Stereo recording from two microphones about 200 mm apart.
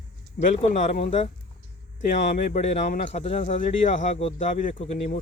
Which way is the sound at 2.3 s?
40° left (ahead or behind).